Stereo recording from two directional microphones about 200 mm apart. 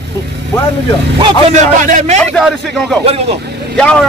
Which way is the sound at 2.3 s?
Centre (ahead or behind).